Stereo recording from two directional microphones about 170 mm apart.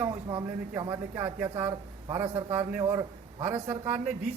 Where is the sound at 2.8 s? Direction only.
25° right (ahead or behind).